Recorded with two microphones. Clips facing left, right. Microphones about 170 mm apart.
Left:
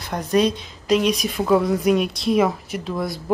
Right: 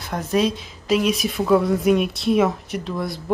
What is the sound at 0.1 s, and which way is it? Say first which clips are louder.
A woman's voice: left 2 dB; 5° right (ahead or behind).